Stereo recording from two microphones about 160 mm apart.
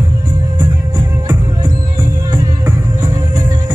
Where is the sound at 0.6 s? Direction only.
25° right (ahead or behind).